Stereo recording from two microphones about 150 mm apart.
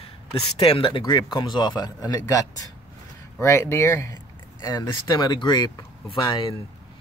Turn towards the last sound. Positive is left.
turn(degrees=35)  # may be behind; listen again after turning